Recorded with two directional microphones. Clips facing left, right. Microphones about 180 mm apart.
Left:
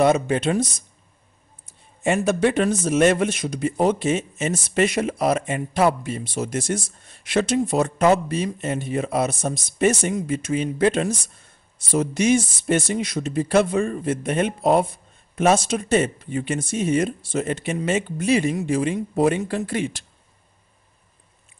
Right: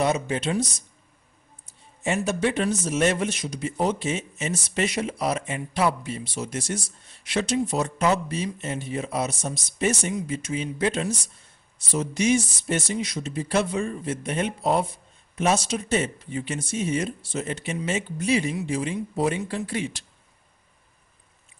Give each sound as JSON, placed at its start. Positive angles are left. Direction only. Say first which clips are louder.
{"t": 0.0, "sound": "speech", "louder": "left 6 dB", "side_deg": 55}
{"t": 2.0, "sound": "a man's voice", "louder": "left 5 dB", "side_deg": 55}